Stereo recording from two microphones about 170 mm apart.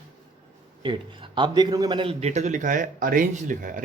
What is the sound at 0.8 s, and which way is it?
A man's voice, 30° right (ahead or behind).